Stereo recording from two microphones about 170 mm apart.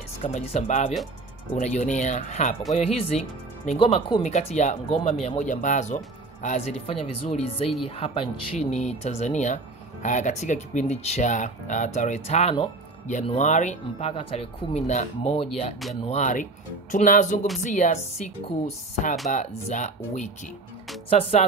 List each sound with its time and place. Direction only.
0.2 s speech: 40° left (ahead or behind)